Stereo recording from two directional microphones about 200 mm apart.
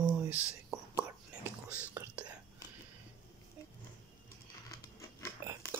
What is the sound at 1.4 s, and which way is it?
Whispering, 10° right (ahead or behind).